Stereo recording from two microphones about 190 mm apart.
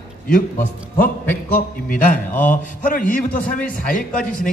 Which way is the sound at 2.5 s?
45° left (ahead or behind).